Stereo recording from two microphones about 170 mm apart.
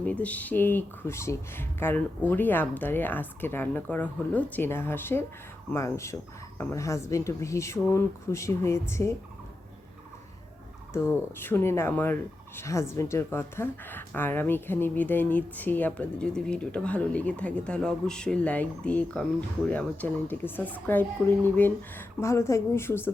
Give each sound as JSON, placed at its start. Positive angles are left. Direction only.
{"t": 0.0, "sound": "speech", "side_deg": 10}
{"t": 11.3, "sound": "speech", "side_deg": 15}